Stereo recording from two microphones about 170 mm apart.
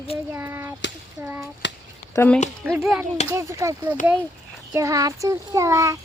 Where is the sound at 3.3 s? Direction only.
15° right (ahead or behind).